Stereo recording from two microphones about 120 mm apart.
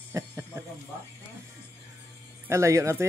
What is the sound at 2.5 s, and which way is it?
Speech, 25° right (ahead or behind).